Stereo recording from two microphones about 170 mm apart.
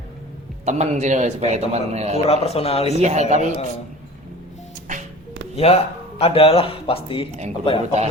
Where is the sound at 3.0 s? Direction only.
40° right (ahead or behind).